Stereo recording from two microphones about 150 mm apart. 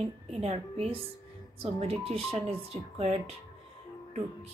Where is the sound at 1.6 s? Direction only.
40° right (ahead or behind).